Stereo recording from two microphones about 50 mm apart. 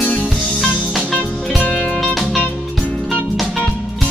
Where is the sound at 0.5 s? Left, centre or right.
Centre.